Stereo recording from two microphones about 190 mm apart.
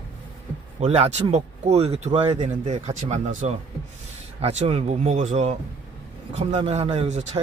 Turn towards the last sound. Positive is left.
turn(degrees=-35)  # may be behind; listen again after turning